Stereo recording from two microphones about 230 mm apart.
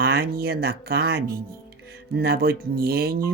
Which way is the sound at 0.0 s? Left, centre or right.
Right.